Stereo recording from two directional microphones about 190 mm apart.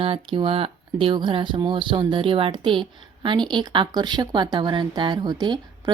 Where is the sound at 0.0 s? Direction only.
30° right (ahead or behind).